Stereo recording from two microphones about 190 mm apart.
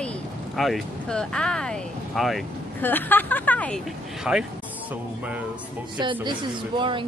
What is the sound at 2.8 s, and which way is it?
Speech, 10° left (ahead or behind).